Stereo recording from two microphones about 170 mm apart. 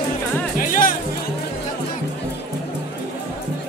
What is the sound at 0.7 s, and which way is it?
Music, 55° left (ahead or behind).